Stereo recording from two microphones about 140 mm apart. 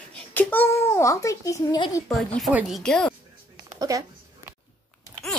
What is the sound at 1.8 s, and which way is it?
Speech, 25° left (ahead or behind).